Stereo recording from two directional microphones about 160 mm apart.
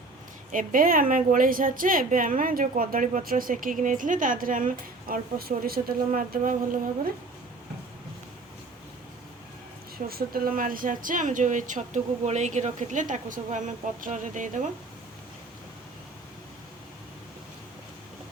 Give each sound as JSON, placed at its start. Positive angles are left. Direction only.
{"t": 0.5, "sound": "a woman's voice", "side_deg": -60}
{"t": 10.1, "sound": "a woman's voice", "side_deg": -70}